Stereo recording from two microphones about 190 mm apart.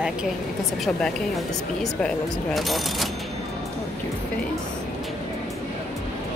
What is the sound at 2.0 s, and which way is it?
Speech, centre (ahead or behind).